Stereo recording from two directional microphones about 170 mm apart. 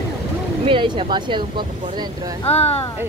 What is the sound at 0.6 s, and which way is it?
Speech, 30° right (ahead or behind).